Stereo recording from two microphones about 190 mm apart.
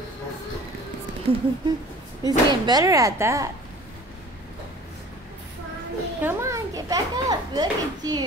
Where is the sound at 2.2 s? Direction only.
20° right (ahead or behind).